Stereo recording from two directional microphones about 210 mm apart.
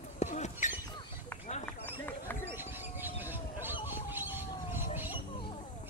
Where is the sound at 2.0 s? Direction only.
10° left (ahead or behind).